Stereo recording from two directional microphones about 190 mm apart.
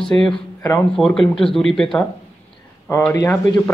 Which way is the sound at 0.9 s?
5° left (ahead or behind).